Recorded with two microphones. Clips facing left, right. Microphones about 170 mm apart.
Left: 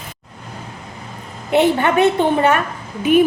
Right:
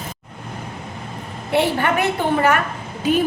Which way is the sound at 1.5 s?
20° left (ahead or behind).